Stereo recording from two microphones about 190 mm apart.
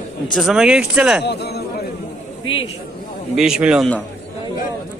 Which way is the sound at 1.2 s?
60° left (ahead or behind).